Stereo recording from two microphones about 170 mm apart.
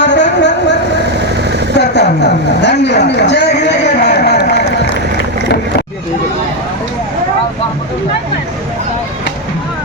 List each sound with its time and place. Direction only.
0.0 s vehicle: 90° left
1.8 s a man's voice: 85° left
3.7 s run: 85° left